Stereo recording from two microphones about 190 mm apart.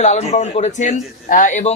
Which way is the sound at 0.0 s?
35° left (ahead or behind).